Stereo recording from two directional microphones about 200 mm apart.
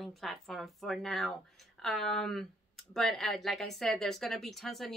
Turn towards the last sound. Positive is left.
turn(degrees=0)  # may be behind; listen again after turning